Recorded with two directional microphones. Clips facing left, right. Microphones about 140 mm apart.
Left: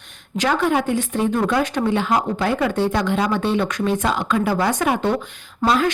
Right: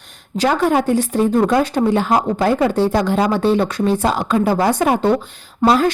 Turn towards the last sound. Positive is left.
turn(degrees=-35)  # may be behind; listen again after turning